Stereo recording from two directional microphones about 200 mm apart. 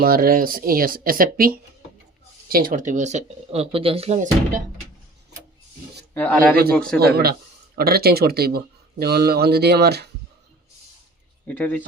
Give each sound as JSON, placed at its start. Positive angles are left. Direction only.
{"t": 0.0, "sound": "speech", "side_deg": -45}
{"t": 6.1, "sound": "speech", "side_deg": 10}
{"t": 7.0, "sound": "speech", "side_deg": -50}
{"t": 11.4, "sound": "speech", "side_deg": 10}